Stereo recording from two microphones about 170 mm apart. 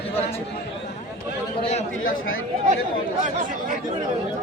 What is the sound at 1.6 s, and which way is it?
Speech, 40° left (ahead or behind).